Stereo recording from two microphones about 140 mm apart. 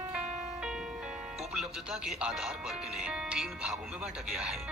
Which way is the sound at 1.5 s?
5° right (ahead or behind).